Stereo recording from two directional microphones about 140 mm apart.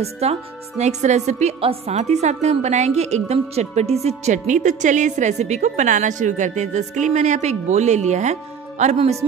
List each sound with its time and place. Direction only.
0.0 s a woman's voice: 50° right (ahead or behind)